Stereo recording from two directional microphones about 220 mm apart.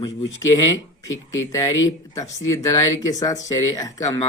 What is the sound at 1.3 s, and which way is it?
Speech, 15° left (ahead or behind).